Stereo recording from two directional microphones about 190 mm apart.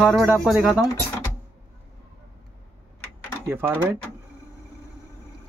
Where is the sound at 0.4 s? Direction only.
5° right (ahead or behind).